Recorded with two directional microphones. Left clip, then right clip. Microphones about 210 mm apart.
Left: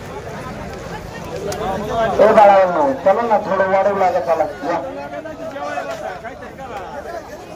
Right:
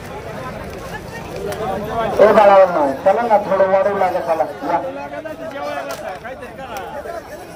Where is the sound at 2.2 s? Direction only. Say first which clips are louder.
Right 1 dB; 30° right (ahead or behind); by 4.1 s 5° right (ahead or behind).